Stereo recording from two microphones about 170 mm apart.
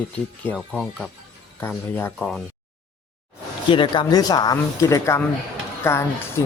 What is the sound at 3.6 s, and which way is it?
Speech, 30° left (ahead or behind).